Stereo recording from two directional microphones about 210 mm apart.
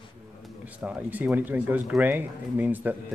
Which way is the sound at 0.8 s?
5° right (ahead or behind).